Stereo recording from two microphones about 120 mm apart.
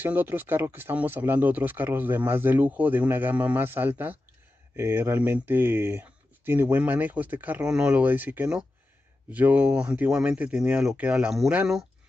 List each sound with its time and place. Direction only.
0.0 s speech: 15° right (ahead or behind)